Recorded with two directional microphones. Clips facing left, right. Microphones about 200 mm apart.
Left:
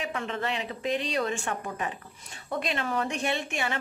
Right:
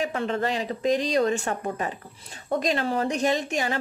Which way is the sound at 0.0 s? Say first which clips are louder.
Right 6 dB; 35° right (ahead or behind).